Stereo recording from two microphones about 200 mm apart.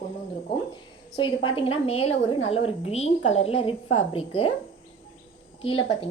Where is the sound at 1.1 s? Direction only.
25° left (ahead or behind).